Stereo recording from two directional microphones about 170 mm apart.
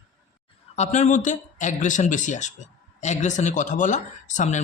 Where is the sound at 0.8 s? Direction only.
40° left (ahead or behind).